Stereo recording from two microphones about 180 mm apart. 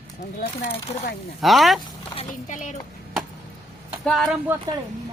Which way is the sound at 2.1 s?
45° left (ahead or behind).